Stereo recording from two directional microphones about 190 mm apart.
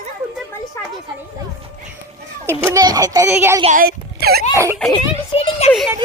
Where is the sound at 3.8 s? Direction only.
55° right (ahead or behind).